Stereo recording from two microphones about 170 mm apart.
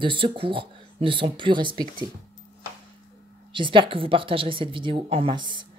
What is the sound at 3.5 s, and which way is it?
A woman's voice, 30° right (ahead or behind).